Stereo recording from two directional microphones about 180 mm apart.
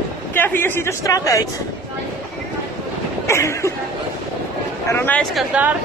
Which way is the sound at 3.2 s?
15° left (ahead or behind).